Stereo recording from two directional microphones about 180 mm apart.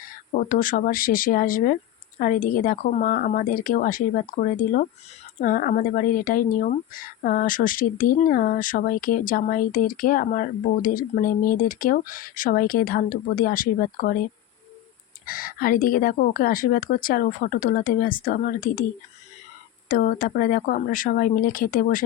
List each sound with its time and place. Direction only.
0.3 s speech: 50° left (ahead or behind)
15.3 s speech: 55° left (ahead or behind)
19.9 s speech: 50° left (ahead or behind)